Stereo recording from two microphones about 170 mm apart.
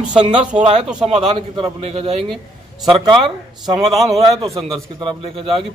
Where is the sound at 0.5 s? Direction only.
40° right (ahead or behind).